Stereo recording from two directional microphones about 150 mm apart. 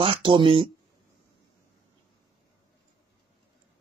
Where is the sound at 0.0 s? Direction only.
35° right (ahead or behind).